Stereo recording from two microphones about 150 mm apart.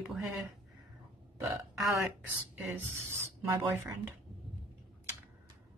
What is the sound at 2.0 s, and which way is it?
Speech, 15° right (ahead or behind).